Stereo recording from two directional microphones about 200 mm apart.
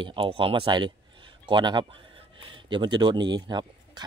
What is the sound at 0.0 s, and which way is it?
Speech, 25° right (ahead or behind).